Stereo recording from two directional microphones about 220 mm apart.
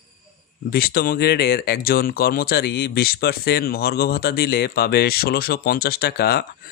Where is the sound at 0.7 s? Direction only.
45° left (ahead or behind).